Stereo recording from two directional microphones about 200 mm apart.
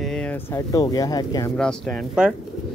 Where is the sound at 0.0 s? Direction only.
5° left (ahead or behind).